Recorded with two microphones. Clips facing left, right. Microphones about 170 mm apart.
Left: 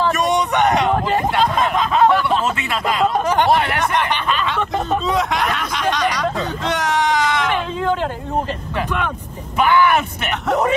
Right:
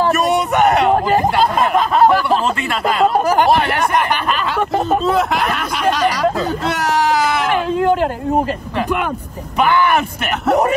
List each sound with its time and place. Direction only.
0.8 s a sound: 40° right (ahead or behind)
1.7 s snicker: centre (ahead or behind)
3.3 s speech: centre (ahead or behind)
5.0 s speech: centre (ahead or behind)
7.5 s a sound: 45° right (ahead or behind)
8.7 s speech: 10° right (ahead or behind)
10.4 s speech: 35° right (ahead or behind)